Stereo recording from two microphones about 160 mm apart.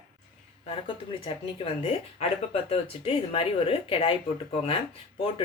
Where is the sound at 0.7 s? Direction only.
35° left (ahead or behind).